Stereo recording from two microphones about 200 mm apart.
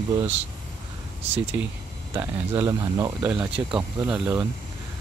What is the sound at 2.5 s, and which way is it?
Speech, 20° right (ahead or behind).